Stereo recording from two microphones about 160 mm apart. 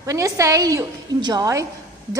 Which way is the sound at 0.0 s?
20° right (ahead or behind).